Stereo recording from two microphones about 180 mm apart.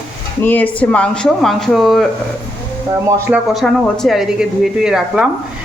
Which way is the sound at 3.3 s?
Centre (ahead or behind).